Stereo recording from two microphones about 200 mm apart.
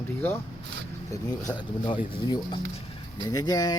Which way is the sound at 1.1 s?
20° left (ahead or behind).